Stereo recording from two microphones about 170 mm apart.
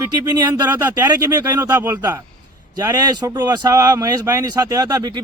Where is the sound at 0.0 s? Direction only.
20° right (ahead or behind).